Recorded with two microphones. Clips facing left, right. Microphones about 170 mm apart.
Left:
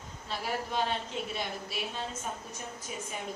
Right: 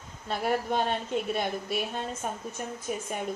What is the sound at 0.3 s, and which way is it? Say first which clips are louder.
A woman's voice: right 7 dB; 55° right (ahead or behind).